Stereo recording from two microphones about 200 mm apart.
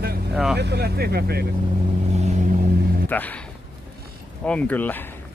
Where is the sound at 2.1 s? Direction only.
35° right (ahead or behind).